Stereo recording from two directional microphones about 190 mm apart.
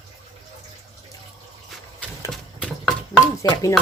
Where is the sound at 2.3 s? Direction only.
5° left (ahead or behind).